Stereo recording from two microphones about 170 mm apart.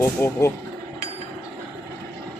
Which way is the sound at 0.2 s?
15° left (ahead or behind).